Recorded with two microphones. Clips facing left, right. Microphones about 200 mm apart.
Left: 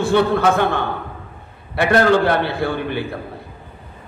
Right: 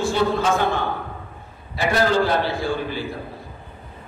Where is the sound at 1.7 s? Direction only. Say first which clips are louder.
Left 5 dB; 60° left (ahead or behind).